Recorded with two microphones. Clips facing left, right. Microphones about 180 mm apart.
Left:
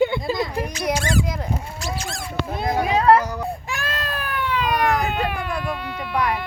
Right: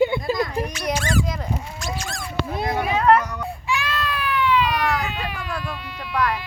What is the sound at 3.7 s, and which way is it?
Baby cry, 45° left (ahead or behind).